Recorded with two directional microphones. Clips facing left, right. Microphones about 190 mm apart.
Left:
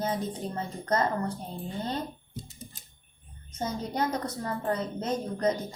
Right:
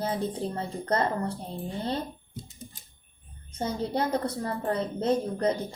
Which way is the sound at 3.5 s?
30° right (ahead or behind).